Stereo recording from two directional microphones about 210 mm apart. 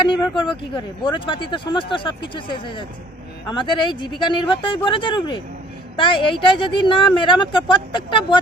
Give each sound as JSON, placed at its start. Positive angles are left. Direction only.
{"t": 0.0, "sound": "speech", "side_deg": 25}